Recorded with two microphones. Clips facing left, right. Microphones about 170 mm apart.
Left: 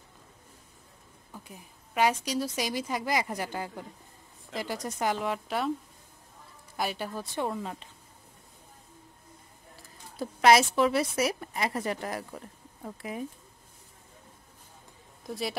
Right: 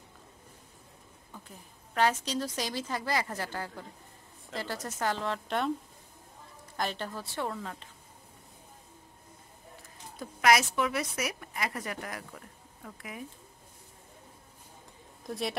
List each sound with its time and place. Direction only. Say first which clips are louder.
1.3 s a woman's voice: left 3 dB; 10° left (ahead or behind)
6.8 s a woman's voice: left 2 dB; 10° left (ahead or behind)
10.1 s a woman's voice: left 4 dB; 30° left (ahead or behind)
15.2 s speech: even; centre (ahead or behind)